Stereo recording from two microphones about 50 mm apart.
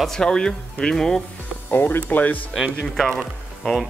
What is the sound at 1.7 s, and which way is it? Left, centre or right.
Speech, left.